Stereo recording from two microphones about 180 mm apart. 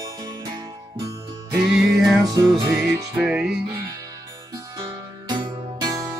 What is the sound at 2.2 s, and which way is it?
Music, 20° right (ahead or behind).